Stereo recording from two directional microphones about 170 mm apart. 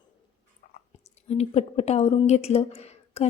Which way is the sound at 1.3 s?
40° left (ahead or behind).